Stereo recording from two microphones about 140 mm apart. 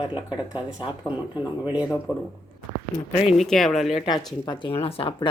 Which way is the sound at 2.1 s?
10° right (ahead or behind).